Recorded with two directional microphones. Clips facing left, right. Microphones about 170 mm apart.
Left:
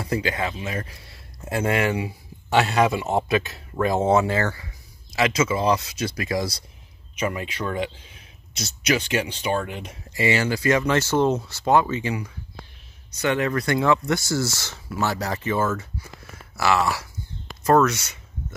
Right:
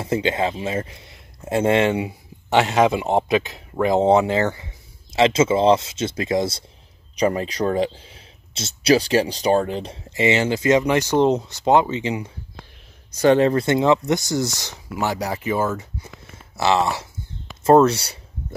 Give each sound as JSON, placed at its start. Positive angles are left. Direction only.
{"t": 0.0, "sound": "speech", "side_deg": -25}
{"t": 7.2, "sound": "speech", "side_deg": -35}
{"t": 13.2, "sound": "speech", "side_deg": -30}